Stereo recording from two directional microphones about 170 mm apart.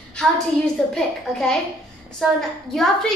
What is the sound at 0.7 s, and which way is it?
A woman's voice, 5° left (ahead or behind).